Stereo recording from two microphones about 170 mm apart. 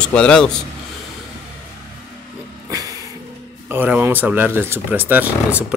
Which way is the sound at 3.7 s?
10° right (ahead or behind).